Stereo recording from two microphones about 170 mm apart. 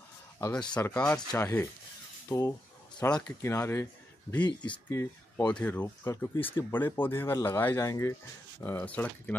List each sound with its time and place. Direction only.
0.7 s speech: 10° left (ahead or behind)
4.4 s speech: 25° left (ahead or behind); by 9.4 s 10° left (ahead or behind)